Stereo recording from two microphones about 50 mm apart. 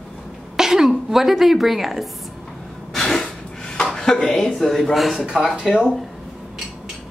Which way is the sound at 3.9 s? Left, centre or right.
Centre.